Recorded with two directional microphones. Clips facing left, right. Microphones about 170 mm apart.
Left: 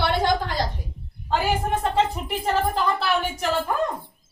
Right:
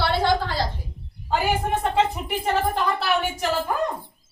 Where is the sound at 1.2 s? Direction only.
5° right (ahead or behind).